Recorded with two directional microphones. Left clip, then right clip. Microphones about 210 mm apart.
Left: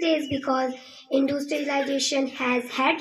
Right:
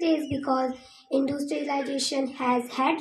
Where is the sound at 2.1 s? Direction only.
40° right (ahead or behind).